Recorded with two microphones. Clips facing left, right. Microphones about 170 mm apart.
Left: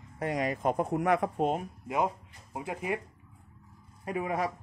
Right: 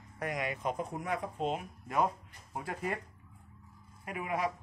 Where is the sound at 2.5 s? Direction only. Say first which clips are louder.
Left 3 dB; 15° left (ahead or behind).